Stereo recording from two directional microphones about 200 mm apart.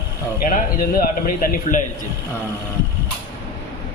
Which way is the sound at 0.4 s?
45° left (ahead or behind).